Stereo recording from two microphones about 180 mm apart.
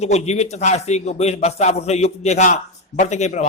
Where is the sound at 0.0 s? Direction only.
35° left (ahead or behind).